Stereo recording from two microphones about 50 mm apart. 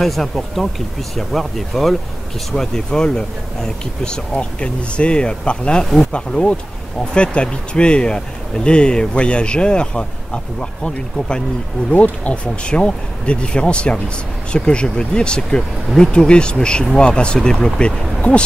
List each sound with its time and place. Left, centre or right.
0.0 s speech: centre
11.9 s speech: left